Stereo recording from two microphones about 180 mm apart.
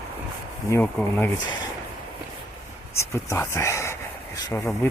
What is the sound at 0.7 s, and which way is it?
Speech, 10° left (ahead or behind).